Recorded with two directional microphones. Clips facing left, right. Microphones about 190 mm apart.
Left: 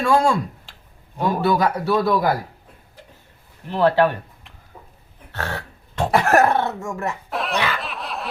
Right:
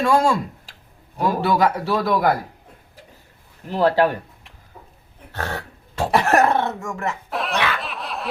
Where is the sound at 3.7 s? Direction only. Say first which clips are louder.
Left 1 dB; 40° right (ahead or behind).